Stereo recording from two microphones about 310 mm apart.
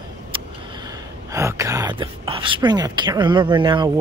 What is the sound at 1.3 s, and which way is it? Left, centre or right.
Speech, centre.